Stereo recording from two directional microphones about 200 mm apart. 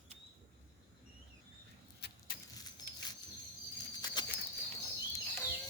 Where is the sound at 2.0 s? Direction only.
55° left (ahead or behind).